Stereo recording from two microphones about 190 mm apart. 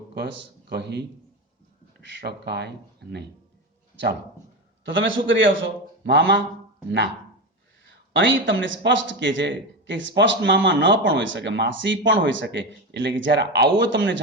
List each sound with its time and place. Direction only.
0.1 s speech: 60° right (ahead or behind)
4.9 s a man's voice: 80° right
8.1 s a man's voice: 75° right (ahead or behind)